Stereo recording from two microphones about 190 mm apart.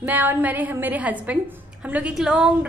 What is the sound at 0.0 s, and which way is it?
A woman's voice, 10° right (ahead or behind).